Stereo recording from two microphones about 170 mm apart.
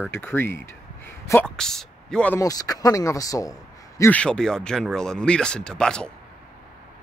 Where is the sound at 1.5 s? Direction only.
5° left (ahead or behind).